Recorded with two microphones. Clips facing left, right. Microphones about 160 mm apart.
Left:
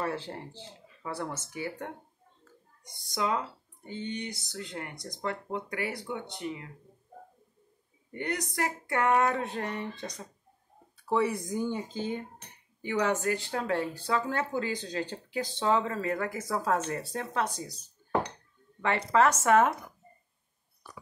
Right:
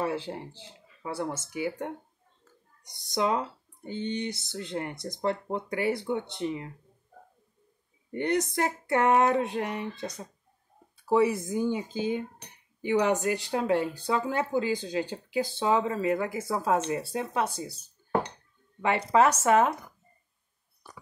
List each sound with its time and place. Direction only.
0.0 s speech: 15° right (ahead or behind)
4.0 s speech: 25° right (ahead or behind)
8.1 s speech: 25° right (ahead or behind); by 17.7 s 10° right (ahead or behind)
18.8 s speech: 15° right (ahead or behind)
19.4 s speech: centre (ahead or behind)